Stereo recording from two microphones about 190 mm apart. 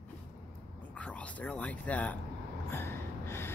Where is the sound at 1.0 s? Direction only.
5° left (ahead or behind).